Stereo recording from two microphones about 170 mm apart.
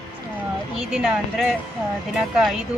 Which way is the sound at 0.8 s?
5° right (ahead or behind).